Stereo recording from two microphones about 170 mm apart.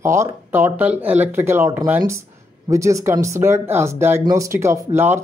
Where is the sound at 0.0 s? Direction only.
15° right (ahead or behind).